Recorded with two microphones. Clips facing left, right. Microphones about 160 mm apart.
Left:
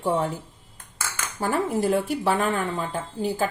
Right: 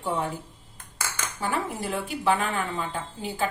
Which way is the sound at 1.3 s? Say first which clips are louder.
Left 6 dB; 40° left (ahead or behind).